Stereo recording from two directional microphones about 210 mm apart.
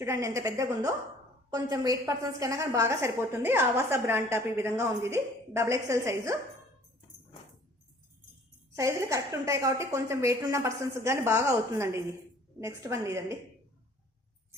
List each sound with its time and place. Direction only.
0.0 s a woman's voice: 15° right (ahead or behind)
8.7 s a woman's voice: 15° right (ahead or behind)